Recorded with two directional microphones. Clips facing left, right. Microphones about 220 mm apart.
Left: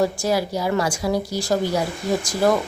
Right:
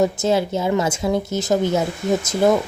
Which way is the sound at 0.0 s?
25° right (ahead or behind).